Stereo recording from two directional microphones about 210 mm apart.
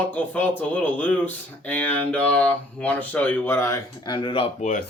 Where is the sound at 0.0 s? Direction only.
10° left (ahead or behind); by 4.4 s 25° left (ahead or behind).